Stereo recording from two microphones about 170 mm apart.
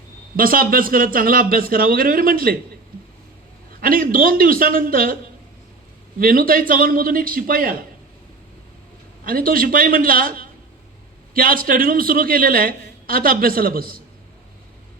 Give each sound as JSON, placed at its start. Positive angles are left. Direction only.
{"t": 0.3, "sound": "a woman's voice", "side_deg": -55}
{"t": 3.8, "sound": "a woman's voice", "side_deg": -60}
{"t": 6.1, "sound": "a woman's voice", "side_deg": -60}
{"t": 9.2, "sound": "a woman's voice", "side_deg": -55}